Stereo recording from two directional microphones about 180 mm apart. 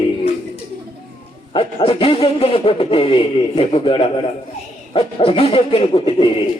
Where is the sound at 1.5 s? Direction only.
30° left (ahead or behind).